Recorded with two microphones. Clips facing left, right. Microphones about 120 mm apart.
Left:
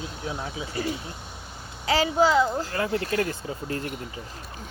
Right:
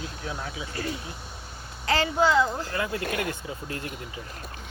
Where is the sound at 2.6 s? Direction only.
30° left (ahead or behind).